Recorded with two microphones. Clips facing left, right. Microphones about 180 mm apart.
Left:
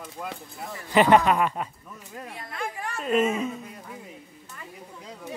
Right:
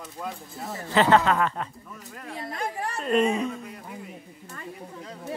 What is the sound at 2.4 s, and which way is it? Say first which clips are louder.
Speech: right 3 dB; 35° right (ahead or behind).